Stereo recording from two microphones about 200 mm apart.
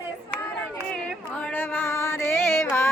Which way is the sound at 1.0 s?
5° left (ahead or behind).